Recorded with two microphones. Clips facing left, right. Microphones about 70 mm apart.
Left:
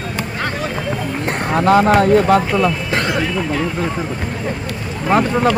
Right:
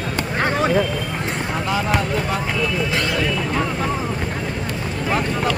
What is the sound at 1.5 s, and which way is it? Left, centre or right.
Speech, left.